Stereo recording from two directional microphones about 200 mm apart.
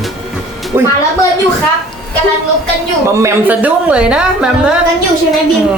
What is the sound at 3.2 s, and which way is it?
Speech, 10° right (ahead or behind).